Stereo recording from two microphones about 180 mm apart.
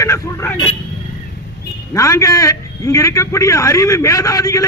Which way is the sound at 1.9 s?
20° left (ahead or behind).